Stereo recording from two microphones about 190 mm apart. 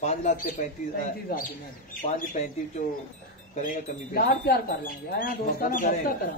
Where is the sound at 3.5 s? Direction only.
45° left (ahead or behind).